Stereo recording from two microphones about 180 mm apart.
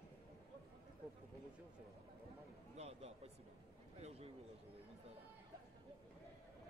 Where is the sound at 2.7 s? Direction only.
35° right (ahead or behind).